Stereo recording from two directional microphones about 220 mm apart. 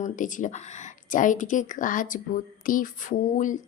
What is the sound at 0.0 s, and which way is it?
A woman's voice, 35° left (ahead or behind).